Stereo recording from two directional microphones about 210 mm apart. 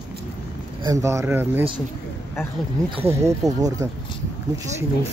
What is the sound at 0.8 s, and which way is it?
Speech, 15° right (ahead or behind).